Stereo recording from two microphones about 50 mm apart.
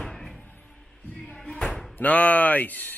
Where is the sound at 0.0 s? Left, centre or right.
Centre.